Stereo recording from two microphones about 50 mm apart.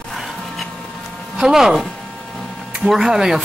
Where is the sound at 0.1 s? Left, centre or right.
Centre.